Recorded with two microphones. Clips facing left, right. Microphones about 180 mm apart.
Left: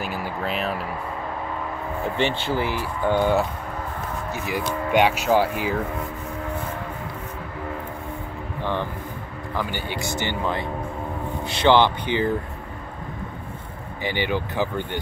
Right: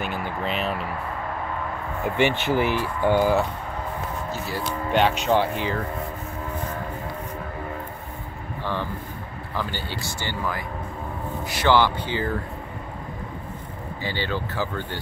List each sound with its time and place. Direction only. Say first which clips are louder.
0.0 s speech: even; 5° left (ahead or behind)
2.1 s speech: right 3 dB; 15° right (ahead or behind)
3.2 s speech: left 1 dB; centre (ahead or behind)
4.3 s speech: left 5 dB; 15° left (ahead or behind)
9.6 s speech: left 2 dB; 15° left (ahead or behind)
14.0 s speech: left 3 dB; 15° left (ahead or behind)